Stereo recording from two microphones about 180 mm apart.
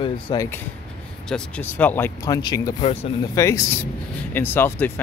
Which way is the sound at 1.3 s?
10° left (ahead or behind).